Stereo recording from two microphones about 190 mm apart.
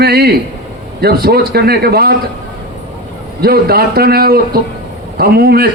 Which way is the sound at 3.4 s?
55° right (ahead or behind).